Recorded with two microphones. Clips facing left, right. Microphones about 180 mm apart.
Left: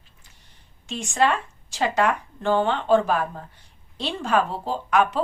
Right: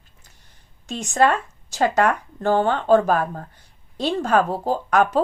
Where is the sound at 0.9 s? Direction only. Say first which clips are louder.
Right 3 dB; 40° right (ahead or behind).